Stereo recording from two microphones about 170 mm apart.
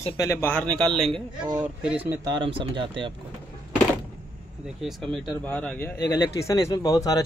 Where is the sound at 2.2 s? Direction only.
30° right (ahead or behind).